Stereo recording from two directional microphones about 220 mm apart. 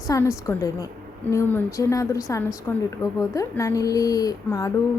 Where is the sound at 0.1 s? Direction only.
15° left (ahead or behind).